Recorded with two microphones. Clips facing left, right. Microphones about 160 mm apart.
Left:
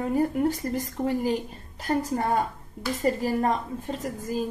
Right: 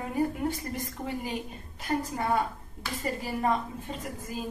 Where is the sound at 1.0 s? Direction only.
40° left (ahead or behind).